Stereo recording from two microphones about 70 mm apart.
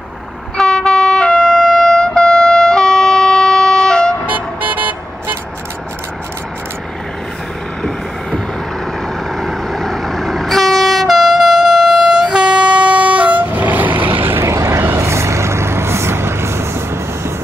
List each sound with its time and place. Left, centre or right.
0.6 s train: centre
4.3 s vehicle: right
9.4 s vehicle: centre; by 14.4 s right
14.4 s vehicle: right